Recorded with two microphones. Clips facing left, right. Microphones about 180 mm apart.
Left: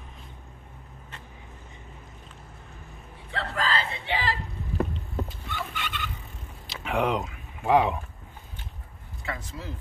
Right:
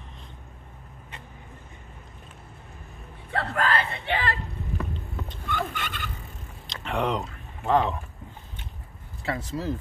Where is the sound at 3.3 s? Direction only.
55° right (ahead or behind).